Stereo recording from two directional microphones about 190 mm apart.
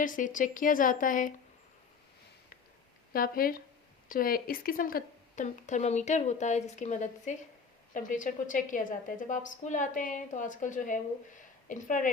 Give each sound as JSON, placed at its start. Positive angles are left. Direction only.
{"t": 0.0, "sound": "a woman's voice", "side_deg": 45}
{"t": 3.1, "sound": "a woman's voice", "side_deg": 50}